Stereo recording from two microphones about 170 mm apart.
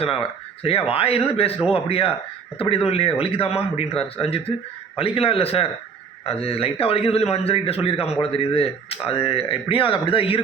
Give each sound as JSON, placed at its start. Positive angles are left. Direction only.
{"t": 0.0, "sound": "speech", "side_deg": 35}